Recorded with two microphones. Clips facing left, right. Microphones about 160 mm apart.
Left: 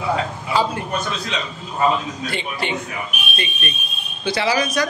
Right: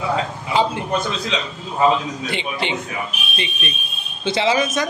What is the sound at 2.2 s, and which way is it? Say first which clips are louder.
Speech: right 1 dB; 20° right (ahead or behind).